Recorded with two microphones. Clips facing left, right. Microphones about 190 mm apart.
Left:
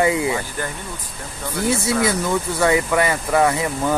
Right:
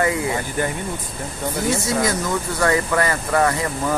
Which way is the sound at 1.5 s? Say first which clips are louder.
Left 2 dB; 25° right (ahead or behind).